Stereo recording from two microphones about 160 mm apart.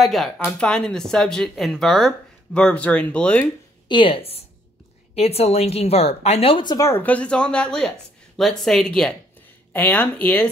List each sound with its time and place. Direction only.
0.0 s speech: centre (ahead or behind)
3.9 s a woman's voice: 35° left (ahead or behind); by 10.5 s 10° left (ahead or behind)